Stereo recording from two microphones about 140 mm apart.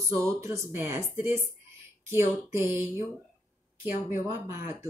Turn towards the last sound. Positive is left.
turn(degrees=-20)  # may be behind; listen again after turning